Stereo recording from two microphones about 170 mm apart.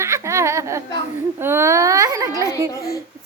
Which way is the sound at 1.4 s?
15° right (ahead or behind).